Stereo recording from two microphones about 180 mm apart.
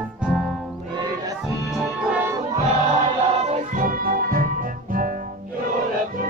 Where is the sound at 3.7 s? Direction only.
50° right (ahead or behind).